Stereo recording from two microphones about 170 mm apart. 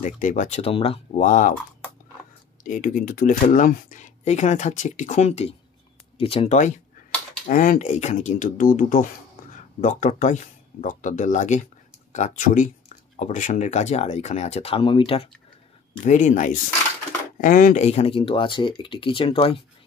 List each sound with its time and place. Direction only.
0.0 s speech: 50° left (ahead or behind)
2.6 s speech: 50° left (ahead or behind)
7.4 s speech: 55° left (ahead or behind); by 15.2 s 30° left (ahead or behind)
16.0 s speech: 45° left (ahead or behind)
17.8 s speech: 35° left (ahead or behind)